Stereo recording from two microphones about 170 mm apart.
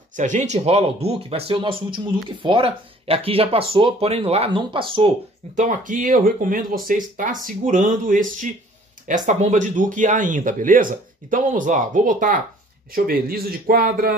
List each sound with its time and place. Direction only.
0.1 s speech: 45° right (ahead or behind); by 5.1 s 30° right (ahead or behind)
5.6 s speech: 50° right (ahead or behind)